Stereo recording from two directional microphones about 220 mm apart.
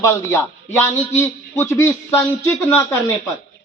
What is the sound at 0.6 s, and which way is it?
Speech, 30° left (ahead or behind).